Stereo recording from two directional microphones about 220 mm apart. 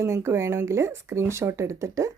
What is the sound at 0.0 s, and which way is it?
Speech, 10° right (ahead or behind).